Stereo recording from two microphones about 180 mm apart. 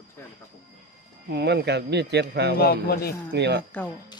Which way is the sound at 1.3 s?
70° right (ahead or behind).